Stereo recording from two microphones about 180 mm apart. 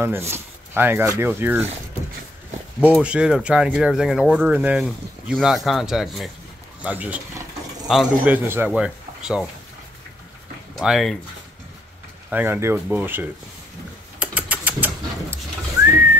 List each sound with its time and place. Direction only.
0.0 s speech: 15° right (ahead or behind)
3.0 s speech: 5° right (ahead or behind)
10.8 s speech: centre (ahead or behind)
12.3 s speech: 10° right (ahead or behind)
14.2 s a sound: 10° right (ahead or behind)